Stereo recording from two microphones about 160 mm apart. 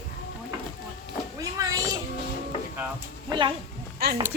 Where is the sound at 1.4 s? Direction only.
20° right (ahead or behind).